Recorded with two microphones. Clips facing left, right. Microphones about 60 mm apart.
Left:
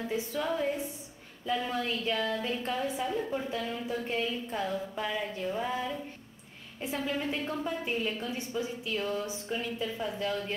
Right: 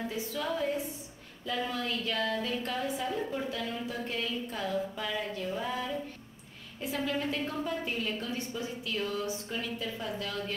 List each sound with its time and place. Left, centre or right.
0.1 s a woman's voice: left